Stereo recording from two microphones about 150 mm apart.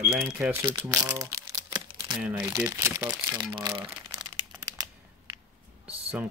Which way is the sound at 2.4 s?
25° right (ahead or behind).